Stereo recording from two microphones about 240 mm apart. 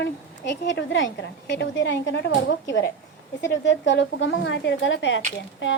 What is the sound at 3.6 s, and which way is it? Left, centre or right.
A woman's voice, left.